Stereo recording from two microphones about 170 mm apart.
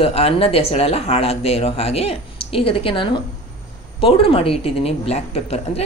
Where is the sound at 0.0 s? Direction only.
35° left (ahead or behind).